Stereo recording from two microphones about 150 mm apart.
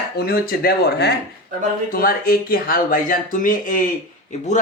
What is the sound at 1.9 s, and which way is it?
Speech, 75° left (ahead or behind).